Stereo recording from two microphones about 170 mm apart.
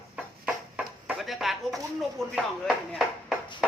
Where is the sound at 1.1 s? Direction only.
Centre (ahead or behind).